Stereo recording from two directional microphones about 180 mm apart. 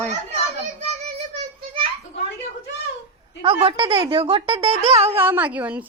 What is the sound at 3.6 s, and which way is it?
Speech, 30° right (ahead or behind).